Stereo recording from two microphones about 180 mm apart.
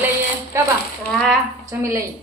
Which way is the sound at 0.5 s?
15° right (ahead or behind).